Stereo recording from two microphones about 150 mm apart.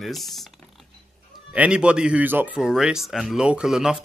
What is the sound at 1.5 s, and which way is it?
Speech, 10° right (ahead or behind).